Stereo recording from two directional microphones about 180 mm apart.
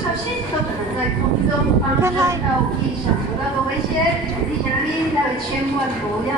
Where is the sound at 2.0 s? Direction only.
15° right (ahead or behind).